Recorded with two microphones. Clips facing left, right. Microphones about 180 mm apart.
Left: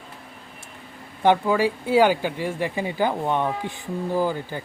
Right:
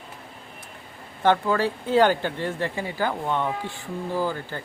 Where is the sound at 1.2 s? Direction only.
15° left (ahead or behind).